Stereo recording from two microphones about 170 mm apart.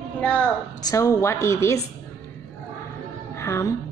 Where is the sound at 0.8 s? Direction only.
20° left (ahead or behind).